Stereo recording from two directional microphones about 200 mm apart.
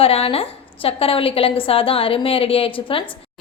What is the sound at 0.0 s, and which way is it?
A woman's voice, 30° left (ahead or behind).